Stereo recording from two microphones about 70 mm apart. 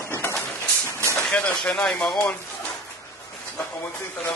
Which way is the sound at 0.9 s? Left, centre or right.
Left.